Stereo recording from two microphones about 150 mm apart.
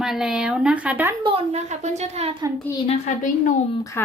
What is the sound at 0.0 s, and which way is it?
A child's voice, 5° right (ahead or behind).